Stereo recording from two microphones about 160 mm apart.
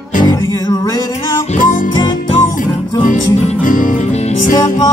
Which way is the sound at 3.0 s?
55° left (ahead or behind).